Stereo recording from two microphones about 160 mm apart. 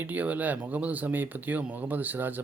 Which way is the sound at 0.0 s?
10° right (ahead or behind).